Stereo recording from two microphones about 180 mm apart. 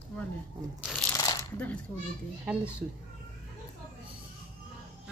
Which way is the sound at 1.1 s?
15° left (ahead or behind).